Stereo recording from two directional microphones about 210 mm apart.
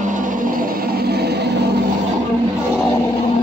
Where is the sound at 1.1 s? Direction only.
50° right (ahead or behind).